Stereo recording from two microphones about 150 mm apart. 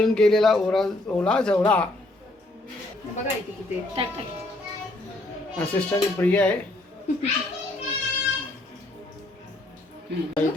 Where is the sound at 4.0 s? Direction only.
40° right (ahead or behind).